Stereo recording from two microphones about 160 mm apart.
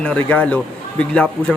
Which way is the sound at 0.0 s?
10° left (ahead or behind).